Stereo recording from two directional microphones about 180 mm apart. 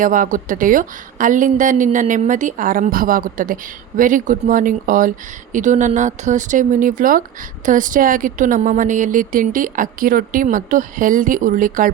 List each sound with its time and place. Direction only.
0.0 s a woman's voice: 50° right (ahead or behind)